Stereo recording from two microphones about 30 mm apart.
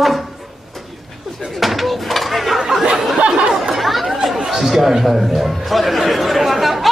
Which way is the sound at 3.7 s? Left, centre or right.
Centre.